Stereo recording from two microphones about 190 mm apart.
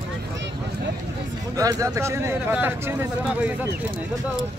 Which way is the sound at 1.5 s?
15° right (ahead or behind).